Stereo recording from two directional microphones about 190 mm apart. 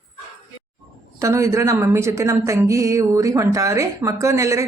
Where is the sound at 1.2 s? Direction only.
15° right (ahead or behind).